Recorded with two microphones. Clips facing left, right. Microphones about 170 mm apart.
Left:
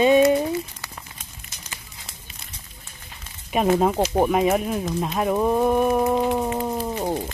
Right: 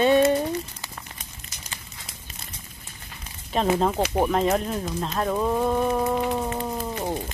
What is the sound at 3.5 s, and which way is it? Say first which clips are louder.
Speech: left 3 dB; 15° left (ahead or behind).